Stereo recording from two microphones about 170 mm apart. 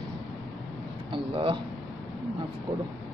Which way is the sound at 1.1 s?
30° right (ahead or behind).